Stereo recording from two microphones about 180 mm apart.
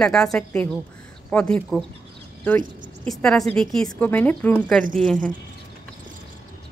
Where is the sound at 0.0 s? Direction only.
5° left (ahead or behind).